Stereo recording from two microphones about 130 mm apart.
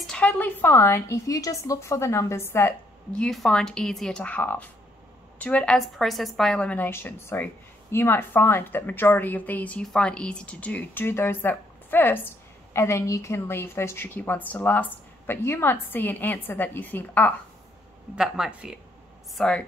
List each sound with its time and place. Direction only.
0.0 s a woman's voice: 10° left (ahead or behind)
3.1 s a woman's voice: 5° left (ahead or behind)
18.1 s speech: 5° right (ahead or behind)